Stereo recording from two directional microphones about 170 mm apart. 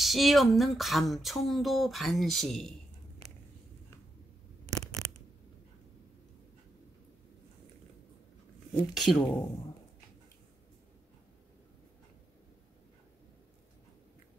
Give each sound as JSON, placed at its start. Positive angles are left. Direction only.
{"t": 0.0, "sound": "speech", "side_deg": 0}
{"t": 4.6, "sound": "a sound", "side_deg": -20}
{"t": 8.9, "sound": "speech", "side_deg": 0}